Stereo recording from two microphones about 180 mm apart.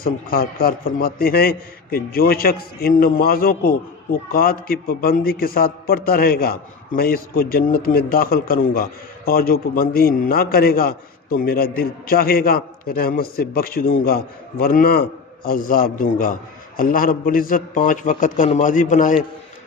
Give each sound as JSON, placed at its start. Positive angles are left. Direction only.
{"t": 0.0, "sound": "a man's voice", "side_deg": 55}